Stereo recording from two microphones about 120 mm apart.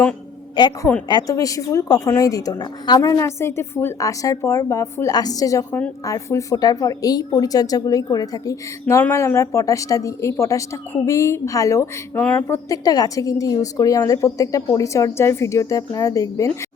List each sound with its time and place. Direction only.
0.6 s a woman's voice: 40° left (ahead or behind)
3.0 s speech: 25° left (ahead or behind)
12.6 s speech: 30° left (ahead or behind)